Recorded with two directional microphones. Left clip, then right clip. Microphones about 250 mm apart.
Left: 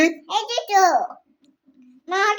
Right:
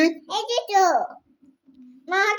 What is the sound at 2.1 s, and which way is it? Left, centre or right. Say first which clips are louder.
Child singing: left 1 dB; centre.